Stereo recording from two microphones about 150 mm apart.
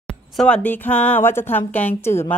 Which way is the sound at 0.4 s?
10° left (ahead or behind).